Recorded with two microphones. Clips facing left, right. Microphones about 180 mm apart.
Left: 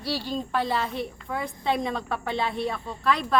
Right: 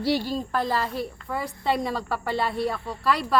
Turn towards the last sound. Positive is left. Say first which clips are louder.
# right 1 dB
turn(degrees=-5)  # may be behind; listen again after turning